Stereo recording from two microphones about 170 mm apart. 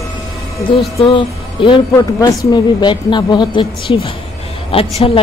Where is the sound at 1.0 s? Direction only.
30° left (ahead or behind).